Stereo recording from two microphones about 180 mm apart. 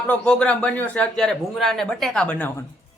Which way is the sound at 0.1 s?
5° left (ahead or behind).